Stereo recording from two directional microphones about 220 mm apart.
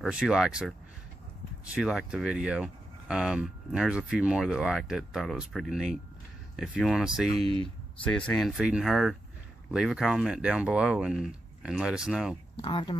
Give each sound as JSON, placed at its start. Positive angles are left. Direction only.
{"t": 0.0, "sound": "speech", "side_deg": -5}
{"t": 7.3, "sound": "speech", "side_deg": -25}
{"t": 8.0, "sound": "speech", "side_deg": 5}
{"t": 12.6, "sound": "speech", "side_deg": 25}